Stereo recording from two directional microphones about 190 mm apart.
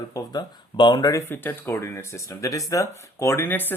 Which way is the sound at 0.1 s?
20° left (ahead or behind).